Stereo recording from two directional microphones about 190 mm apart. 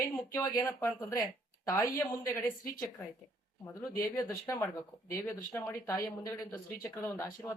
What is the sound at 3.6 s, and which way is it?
Speech, 15° left (ahead or behind).